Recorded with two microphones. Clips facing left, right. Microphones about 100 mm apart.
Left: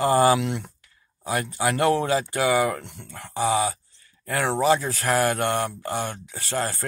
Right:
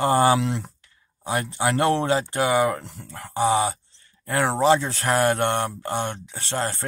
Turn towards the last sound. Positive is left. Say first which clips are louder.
# even
turn(degrees=-25)  # may be behind; listen again after turning